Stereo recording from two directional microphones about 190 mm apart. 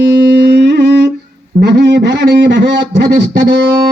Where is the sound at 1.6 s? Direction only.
65° right (ahead or behind).